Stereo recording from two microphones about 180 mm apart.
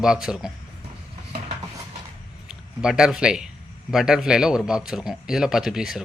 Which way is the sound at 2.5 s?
5° right (ahead or behind).